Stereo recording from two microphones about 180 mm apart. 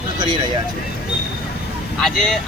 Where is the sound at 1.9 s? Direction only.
Centre (ahead or behind).